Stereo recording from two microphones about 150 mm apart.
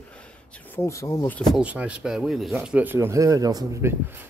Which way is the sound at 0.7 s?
20° left (ahead or behind).